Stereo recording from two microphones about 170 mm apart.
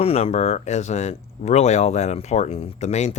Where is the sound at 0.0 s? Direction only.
35° left (ahead or behind).